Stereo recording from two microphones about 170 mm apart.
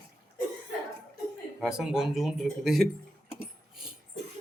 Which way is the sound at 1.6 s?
5° right (ahead or behind).